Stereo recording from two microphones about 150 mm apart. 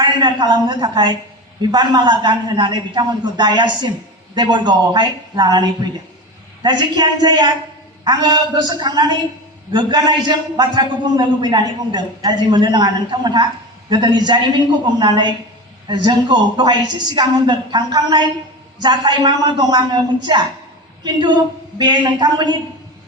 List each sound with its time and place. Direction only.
0.0 s a man's voice: 30° right (ahead or behind)